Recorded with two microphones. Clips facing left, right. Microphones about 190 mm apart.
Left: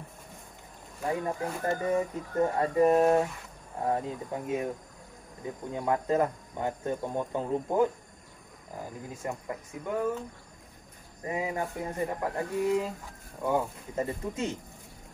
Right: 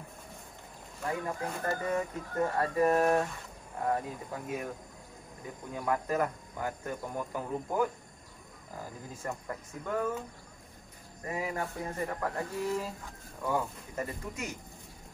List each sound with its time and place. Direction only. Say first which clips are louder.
1.0 s speech: left 4 dB; 25° left (ahead or behind)
5.7 s speech: left 4 dB; 20° left (ahead or behind)
11.2 s speech: left 3 dB; 20° left (ahead or behind)